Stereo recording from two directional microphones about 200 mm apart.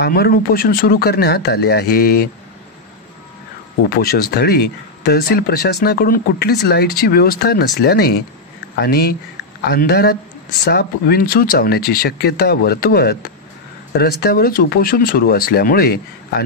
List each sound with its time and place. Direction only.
0.0 s speech: 50° left (ahead or behind)
3.8 s speech: 50° left (ahead or behind)